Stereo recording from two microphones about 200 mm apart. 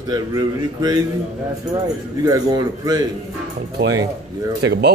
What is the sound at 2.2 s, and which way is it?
Speech, 20° right (ahead or behind).